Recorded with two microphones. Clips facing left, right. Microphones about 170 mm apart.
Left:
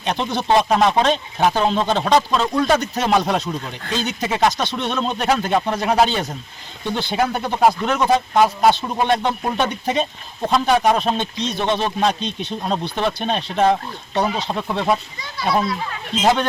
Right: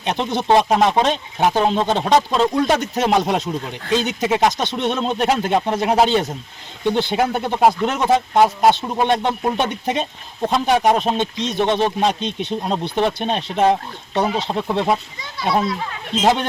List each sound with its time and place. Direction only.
0.0 s speech: 20° right (ahead or behind)